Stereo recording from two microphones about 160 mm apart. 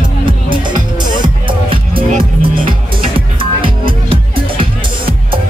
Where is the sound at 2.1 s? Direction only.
65° right (ahead or behind).